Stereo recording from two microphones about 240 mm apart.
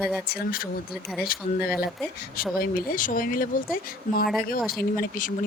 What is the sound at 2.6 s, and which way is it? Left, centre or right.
A woman's voice, left.